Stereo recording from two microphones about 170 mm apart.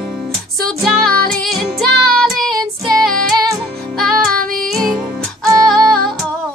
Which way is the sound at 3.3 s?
25° right (ahead or behind).